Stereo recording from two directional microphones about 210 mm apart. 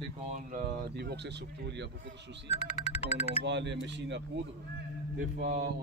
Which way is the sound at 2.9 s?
30° left (ahead or behind).